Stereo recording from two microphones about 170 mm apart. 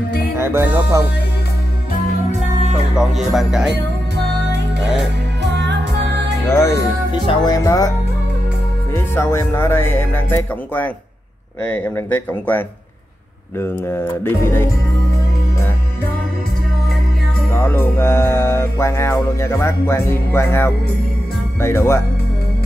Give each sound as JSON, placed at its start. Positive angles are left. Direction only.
{"t": 0.4, "sound": "music", "side_deg": -15}
{"t": 3.0, "sound": "speech", "side_deg": 0}
{"t": 4.2, "sound": "music", "side_deg": -90}
{"t": 6.4, "sound": "music", "side_deg": 15}
{"t": 7.1, "sound": "speech", "side_deg": 25}
{"t": 8.9, "sound": "music", "side_deg": 15}
{"t": 11.9, "sound": "music", "side_deg": 10}
{"t": 17.5, "sound": "music", "side_deg": 10}